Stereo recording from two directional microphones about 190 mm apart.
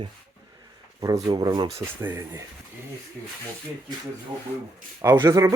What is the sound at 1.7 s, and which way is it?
Speech, 10° right (ahead or behind).